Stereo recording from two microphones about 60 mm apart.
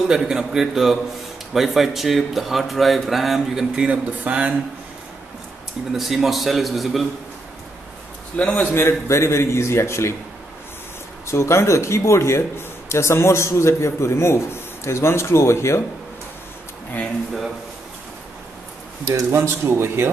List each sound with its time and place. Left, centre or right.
0.1 s a man's voice: centre
3.9 s speech: right
5.9 s speech: centre
8.4 s a man's voice: left
8.7 s speech: left
11.2 s speech: left
19.0 s speech: right